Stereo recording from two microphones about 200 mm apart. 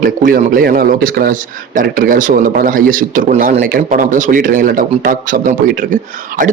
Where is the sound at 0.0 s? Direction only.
45° right (ahead or behind).